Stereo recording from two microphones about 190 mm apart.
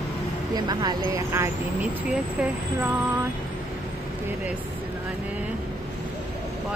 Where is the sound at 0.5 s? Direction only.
20° right (ahead or behind).